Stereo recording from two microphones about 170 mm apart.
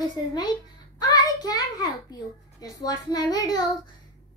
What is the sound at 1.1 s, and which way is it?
A child's voice, 20° left (ahead or behind).